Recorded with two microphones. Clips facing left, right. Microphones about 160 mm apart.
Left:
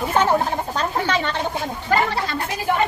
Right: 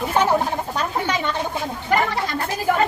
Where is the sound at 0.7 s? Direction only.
10° right (ahead or behind).